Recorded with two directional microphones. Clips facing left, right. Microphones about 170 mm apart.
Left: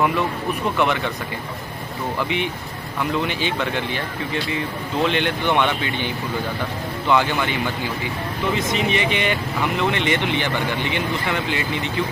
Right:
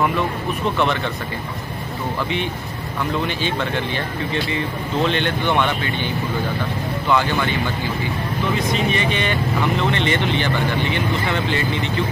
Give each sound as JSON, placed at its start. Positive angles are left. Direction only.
{"t": 0.7, "sound": "speech", "side_deg": 10}
{"t": 2.2, "sound": "speech", "side_deg": 15}
{"t": 8.5, "sound": "speech", "side_deg": 20}